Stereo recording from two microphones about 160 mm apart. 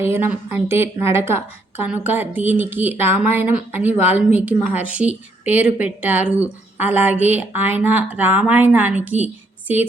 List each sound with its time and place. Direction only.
0.0 s a woman's voice: 15° right (ahead or behind)